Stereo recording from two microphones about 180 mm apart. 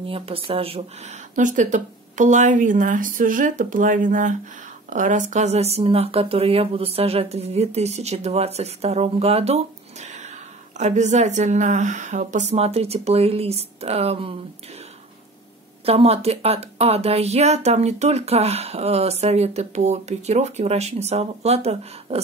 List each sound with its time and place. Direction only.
0.0 s speech: 30° right (ahead or behind)
1.3 s speech: 45° right (ahead or behind)
10.8 s speech: 40° right (ahead or behind)
15.8 s speech: 35° right (ahead or behind)